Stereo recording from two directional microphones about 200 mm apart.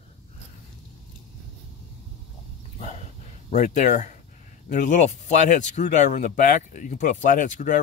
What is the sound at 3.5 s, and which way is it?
Speech, 40° left (ahead or behind).